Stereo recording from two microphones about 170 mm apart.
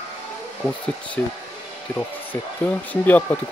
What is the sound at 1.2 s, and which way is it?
Speech, 10° left (ahead or behind).